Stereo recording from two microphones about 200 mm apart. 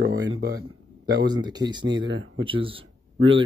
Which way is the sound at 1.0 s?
20° right (ahead or behind).